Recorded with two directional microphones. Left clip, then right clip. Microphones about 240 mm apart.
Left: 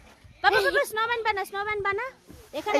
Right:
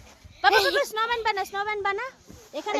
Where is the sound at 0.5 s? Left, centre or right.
Right.